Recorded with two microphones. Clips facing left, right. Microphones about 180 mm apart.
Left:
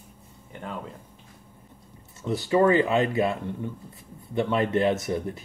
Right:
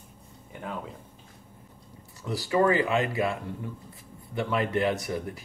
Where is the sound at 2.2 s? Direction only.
25° left (ahead or behind).